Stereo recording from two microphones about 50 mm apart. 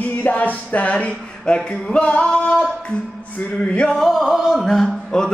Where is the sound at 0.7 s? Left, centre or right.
Left.